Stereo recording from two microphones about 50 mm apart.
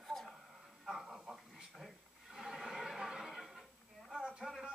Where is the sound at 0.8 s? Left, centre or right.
Centre.